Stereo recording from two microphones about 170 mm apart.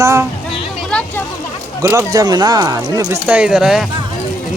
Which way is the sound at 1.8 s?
20° right (ahead or behind).